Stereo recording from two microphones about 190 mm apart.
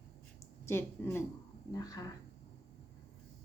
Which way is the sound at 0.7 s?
10° left (ahead or behind).